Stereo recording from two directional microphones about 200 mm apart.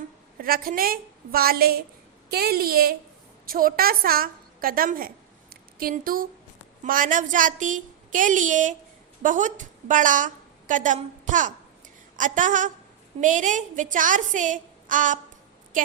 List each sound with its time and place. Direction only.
0.3 s a woman's voice: 45° right (ahead or behind)